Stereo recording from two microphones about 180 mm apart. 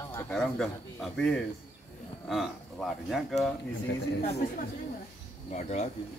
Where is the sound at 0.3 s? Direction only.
Centre (ahead or behind).